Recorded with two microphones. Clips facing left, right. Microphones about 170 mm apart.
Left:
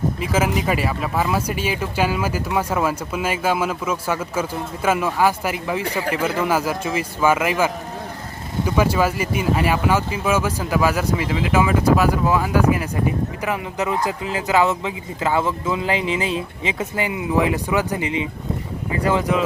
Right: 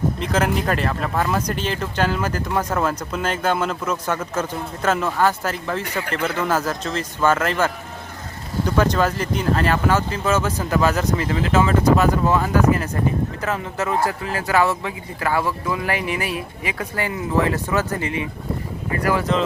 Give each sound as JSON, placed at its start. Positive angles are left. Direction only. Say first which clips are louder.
{"t": 0.2, "sound": "speech", "louder": "even", "side_deg": 5}
{"t": 19.3, "sound": "speech", "louder": "right 1 dB", "side_deg": 10}